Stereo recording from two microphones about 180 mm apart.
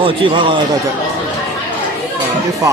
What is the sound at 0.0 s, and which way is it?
Speech, 30° right (ahead or behind).